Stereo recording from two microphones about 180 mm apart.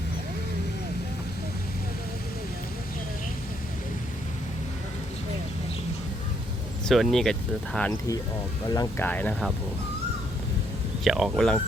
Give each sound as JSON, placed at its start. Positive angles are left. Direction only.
{"t": 6.8, "sound": "speech", "side_deg": 0}
{"t": 8.7, "sound": "speech", "side_deg": 20}
{"t": 9.0, "sound": "speech", "side_deg": 10}
{"t": 11.0, "sound": "speech", "side_deg": 0}